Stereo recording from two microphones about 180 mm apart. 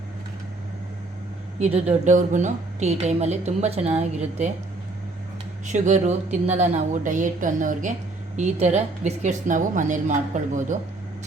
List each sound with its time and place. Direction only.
1.5 s a woman's voice: 35° right (ahead or behind)
5.6 s a woman's voice: 40° right (ahead or behind)